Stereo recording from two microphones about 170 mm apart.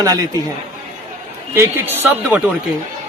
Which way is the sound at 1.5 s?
15° right (ahead or behind).